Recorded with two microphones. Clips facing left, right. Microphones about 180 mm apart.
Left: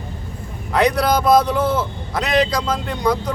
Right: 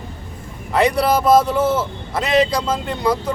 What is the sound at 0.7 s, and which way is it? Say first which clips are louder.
A man's voice: right 1 dB; 5° right (ahead or behind).